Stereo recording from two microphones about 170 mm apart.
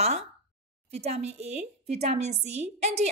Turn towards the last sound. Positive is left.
turn(degrees=-40)  # may be behind; listen again after turning